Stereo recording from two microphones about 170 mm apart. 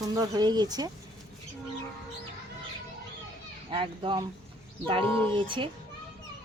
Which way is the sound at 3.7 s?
30° right (ahead or behind).